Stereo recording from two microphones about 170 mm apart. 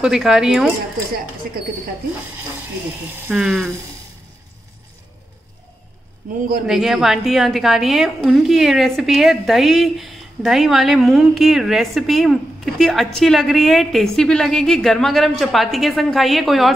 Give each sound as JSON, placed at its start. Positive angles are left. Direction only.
{"t": 0.0, "sound": "a woman's voice", "side_deg": -5}
{"t": 3.3, "sound": "a woman's voice", "side_deg": -5}
{"t": 6.6, "sound": "a woman's voice", "side_deg": 0}